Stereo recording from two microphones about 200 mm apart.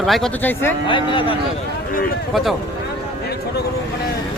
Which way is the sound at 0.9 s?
25° left (ahead or behind).